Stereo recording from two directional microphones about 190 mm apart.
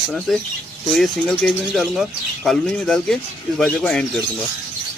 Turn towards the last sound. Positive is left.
turn(degrees=5)  # may be behind; listen again after turning